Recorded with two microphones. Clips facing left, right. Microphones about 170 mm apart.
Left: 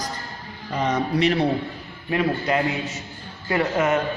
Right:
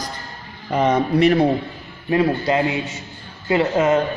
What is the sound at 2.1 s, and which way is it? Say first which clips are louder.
A man's voice: right 4 dB; 30° right (ahead or behind).